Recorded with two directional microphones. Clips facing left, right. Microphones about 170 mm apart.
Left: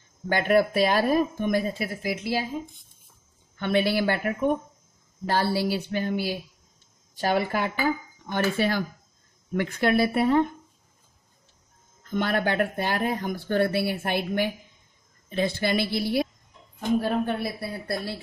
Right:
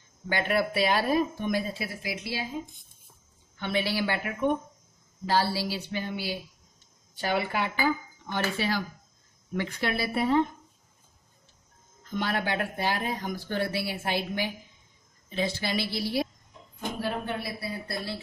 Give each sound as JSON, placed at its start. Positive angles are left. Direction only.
{"t": 0.3, "sound": "speech", "side_deg": 45}
{"t": 3.5, "sound": "speech", "side_deg": 50}
{"t": 12.1, "sound": "speech", "side_deg": 55}